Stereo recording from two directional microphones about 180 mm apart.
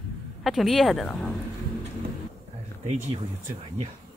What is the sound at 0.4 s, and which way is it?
Speech, centre (ahead or behind).